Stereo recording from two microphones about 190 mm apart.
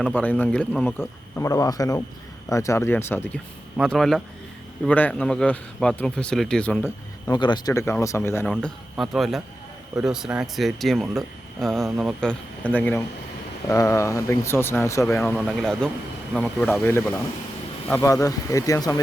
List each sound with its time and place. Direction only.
0.0 s speech: 10° left (ahead or behind)
3.8 s speech: centre (ahead or behind)
7.3 s speech: 25° left (ahead or behind)
15.4 s speech: centre (ahead or behind); by 18.9 s 15° left (ahead or behind)